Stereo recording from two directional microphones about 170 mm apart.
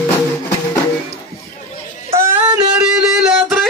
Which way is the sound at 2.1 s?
20° right (ahead or behind).